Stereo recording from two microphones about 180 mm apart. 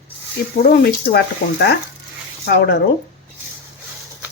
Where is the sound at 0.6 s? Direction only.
60° left (ahead or behind).